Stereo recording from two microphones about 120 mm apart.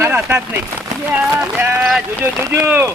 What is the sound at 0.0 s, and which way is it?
Speech, 15° right (ahead or behind).